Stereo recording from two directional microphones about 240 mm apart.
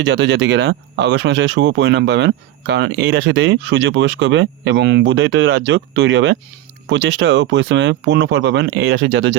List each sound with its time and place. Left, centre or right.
0.0 s speech: right